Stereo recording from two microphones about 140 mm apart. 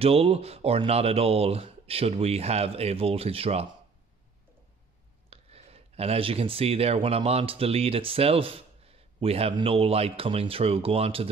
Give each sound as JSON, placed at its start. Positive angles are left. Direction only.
{"t": 0.0, "sound": "speech", "side_deg": -45}
{"t": 5.3, "sound": "speech", "side_deg": -45}